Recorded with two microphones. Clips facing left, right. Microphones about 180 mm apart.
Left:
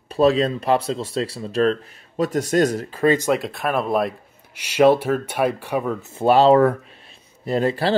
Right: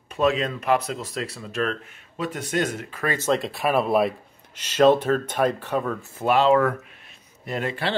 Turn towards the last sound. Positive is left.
turn(degrees=35)  # may be behind; listen again after turning